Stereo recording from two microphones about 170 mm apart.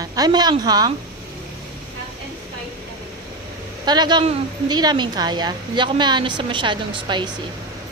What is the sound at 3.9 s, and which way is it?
A woman's voice, 25° right (ahead or behind).